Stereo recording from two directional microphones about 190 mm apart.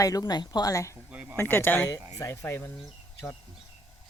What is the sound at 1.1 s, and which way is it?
Speech, 5° right (ahead or behind).